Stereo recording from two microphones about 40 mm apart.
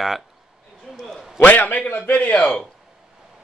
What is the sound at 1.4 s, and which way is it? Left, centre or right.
Speech, left.